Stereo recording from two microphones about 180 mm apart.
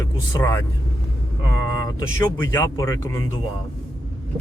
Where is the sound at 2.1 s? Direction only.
15° left (ahead or behind).